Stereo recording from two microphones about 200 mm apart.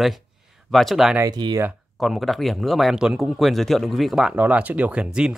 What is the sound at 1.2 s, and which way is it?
Speech, 20° right (ahead or behind).